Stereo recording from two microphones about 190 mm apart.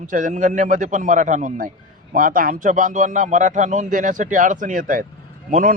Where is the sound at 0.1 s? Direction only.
45° right (ahead or behind).